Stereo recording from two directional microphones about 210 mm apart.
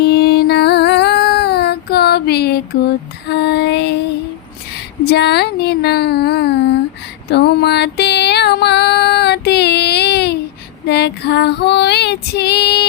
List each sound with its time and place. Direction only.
0.0 s music: 50° left (ahead or behind)
3.2 s female singing: 50° left (ahead or behind)
5.0 s speech: 50° left (ahead or behind)
7.3 s music: 50° left (ahead or behind)
10.8 s female singing: 50° left (ahead or behind)